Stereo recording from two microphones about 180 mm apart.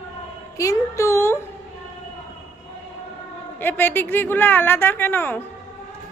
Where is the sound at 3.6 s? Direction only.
10° left (ahead or behind).